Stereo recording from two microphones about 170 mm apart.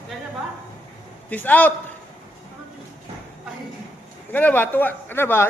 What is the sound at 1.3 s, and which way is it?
Speech, 10° left (ahead or behind).